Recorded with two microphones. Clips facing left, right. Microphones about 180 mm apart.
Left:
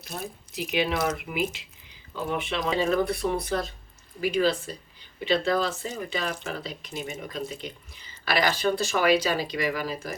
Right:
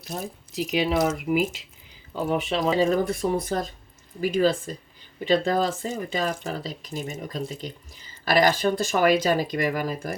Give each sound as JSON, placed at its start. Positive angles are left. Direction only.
{"t": 0.5, "sound": "speech", "side_deg": -35}